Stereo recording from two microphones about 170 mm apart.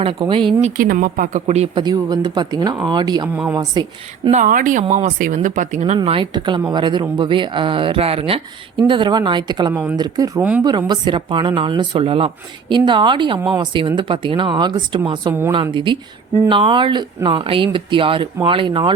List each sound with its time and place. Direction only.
0.0 s speech: 30° right (ahead or behind)
0.6 s speech: 50° right (ahead or behind)
1.8 s speech: 25° right (ahead or behind)
4.3 s speech: 50° right (ahead or behind)
6.0 s speech: 30° right (ahead or behind)